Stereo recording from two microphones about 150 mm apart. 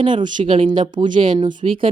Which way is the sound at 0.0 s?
35° right (ahead or behind).